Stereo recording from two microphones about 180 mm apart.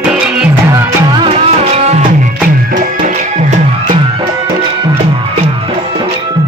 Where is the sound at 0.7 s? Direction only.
20° right (ahead or behind).